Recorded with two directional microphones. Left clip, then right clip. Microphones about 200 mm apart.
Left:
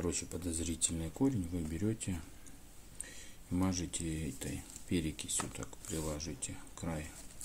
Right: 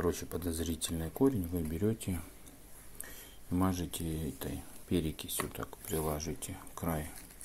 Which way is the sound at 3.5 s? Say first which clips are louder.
Right 3 dB; 5° right (ahead or behind).